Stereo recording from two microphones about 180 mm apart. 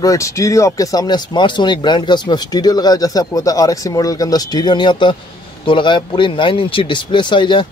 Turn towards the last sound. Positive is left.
turn(degrees=25)  # may be behind; listen again after turning